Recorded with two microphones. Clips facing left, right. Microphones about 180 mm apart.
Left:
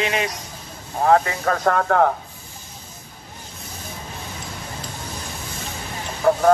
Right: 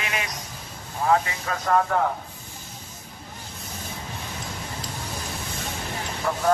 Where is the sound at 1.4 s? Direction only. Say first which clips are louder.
Left 3 dB; 60° left (ahead or behind).